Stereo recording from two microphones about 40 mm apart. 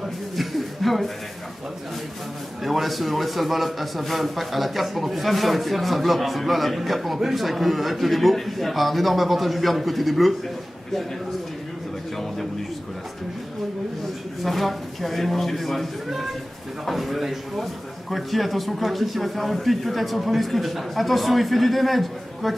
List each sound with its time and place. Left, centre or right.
0.4 s a sound: centre
2.6 s a man's voice: centre
14.4 s a man's voice: centre